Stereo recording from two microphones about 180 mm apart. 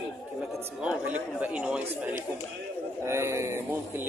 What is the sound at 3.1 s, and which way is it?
Speech, 15° right (ahead or behind).